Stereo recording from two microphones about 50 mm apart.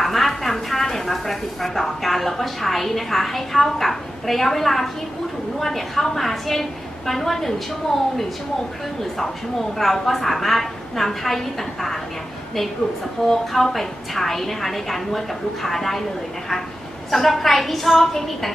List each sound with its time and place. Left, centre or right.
0.0 s a woman's voice: centre
13.3 s a woman's voice: centre
17.1 s a woman's voice: centre